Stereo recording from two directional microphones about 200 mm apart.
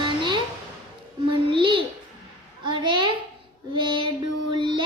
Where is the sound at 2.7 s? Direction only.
25° right (ahead or behind).